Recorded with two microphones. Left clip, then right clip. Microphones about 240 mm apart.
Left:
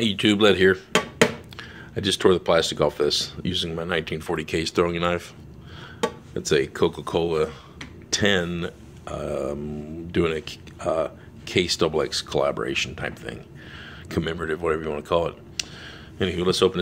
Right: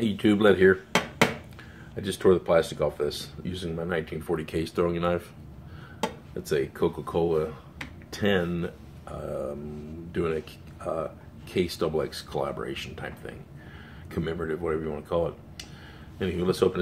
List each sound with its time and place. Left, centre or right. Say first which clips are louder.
0.0 s speech: left 3 dB; left
6.3 s speech: left 6 dB; left